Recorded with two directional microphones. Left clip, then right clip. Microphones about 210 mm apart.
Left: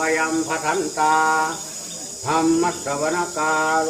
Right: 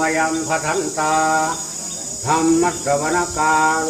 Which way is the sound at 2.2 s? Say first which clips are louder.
Right 2 dB; 5° left (ahead or behind).